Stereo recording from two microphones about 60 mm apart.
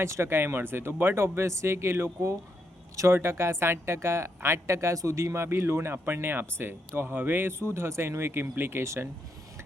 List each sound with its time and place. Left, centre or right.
0.0 s a woman's voice: right
3.1 s a woman's voice: right
7.6 s a woman's voice: right